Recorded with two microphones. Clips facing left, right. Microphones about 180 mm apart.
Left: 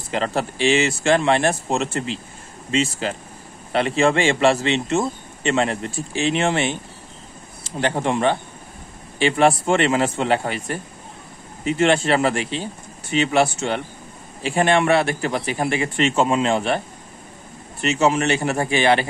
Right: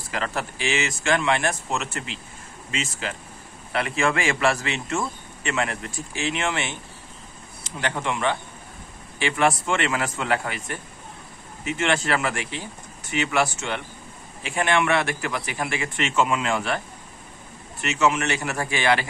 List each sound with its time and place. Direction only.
0.1 s a man's voice: 30° left (ahead or behind)